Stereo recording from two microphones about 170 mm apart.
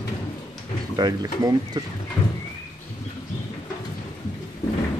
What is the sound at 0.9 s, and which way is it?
Speech, 20° right (ahead or behind).